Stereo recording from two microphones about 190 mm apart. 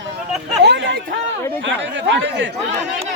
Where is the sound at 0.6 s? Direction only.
70° right (ahead or behind).